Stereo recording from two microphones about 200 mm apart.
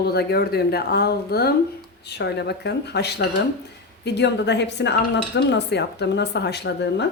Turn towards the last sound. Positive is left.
turn(degrees=60)  # may be behind; listen again after turning